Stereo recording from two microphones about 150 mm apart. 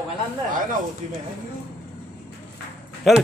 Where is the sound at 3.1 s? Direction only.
Centre (ahead or behind).